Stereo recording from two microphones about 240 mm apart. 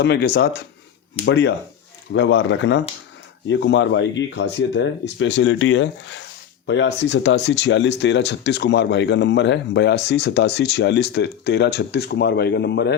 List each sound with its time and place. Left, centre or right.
0.0 s speech: left